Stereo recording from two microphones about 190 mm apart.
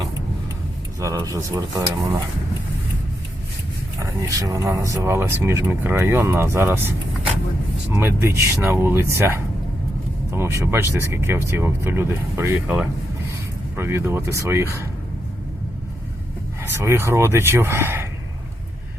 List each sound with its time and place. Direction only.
0.9 s speech: 20° right (ahead or behind)
4.0 s speech: 15° right (ahead or behind)
16.6 s speech: 15° right (ahead or behind)